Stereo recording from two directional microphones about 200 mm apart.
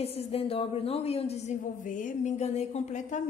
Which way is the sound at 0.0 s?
30° left (ahead or behind).